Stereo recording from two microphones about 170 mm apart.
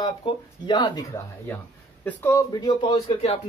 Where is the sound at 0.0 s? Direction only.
25° left (ahead or behind).